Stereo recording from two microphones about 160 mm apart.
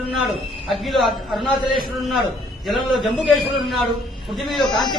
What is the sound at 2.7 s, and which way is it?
A man's voice, centre (ahead or behind).